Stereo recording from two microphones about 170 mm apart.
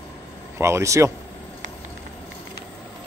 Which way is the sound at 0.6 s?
15° right (ahead or behind).